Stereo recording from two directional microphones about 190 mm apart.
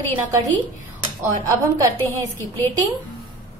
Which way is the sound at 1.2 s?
15° right (ahead or behind).